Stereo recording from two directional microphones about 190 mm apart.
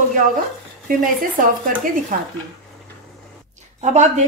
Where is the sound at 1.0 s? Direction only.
45° right (ahead or behind).